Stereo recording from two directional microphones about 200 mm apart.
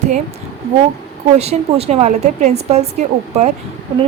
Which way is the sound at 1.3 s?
30° right (ahead or behind).